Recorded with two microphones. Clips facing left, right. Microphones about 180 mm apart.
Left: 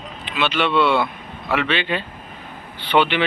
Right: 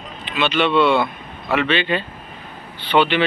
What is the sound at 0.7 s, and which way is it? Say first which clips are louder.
Speech: right 2 dB; 15° right (ahead or behind).